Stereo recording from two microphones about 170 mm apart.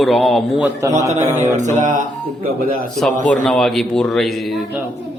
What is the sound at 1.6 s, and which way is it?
Music, 45° right (ahead or behind).